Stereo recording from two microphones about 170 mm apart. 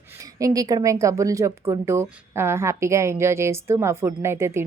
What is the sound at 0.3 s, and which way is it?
Speech, 20° right (ahead or behind).